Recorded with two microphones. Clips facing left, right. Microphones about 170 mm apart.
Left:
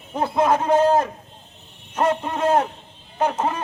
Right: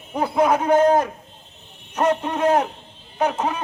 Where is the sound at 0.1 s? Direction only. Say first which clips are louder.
Right 1 dB; 10° right (ahead or behind).